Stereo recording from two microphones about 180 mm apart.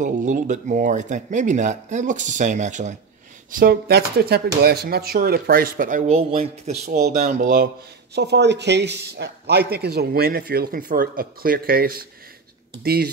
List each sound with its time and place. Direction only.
0.0 s speech: 45° right (ahead or behind)
3.5 s speech: 55° right (ahead or behind)